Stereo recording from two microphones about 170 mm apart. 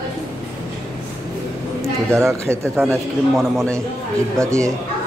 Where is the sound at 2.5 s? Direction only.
15° right (ahead or behind).